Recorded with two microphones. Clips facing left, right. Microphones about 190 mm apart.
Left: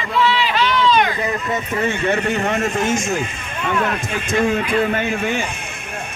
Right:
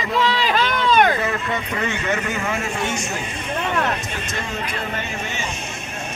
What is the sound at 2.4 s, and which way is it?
Speech, 40° left (ahead or behind).